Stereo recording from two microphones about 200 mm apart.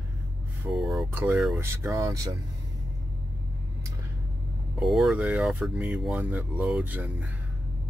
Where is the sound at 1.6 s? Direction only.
10° right (ahead or behind).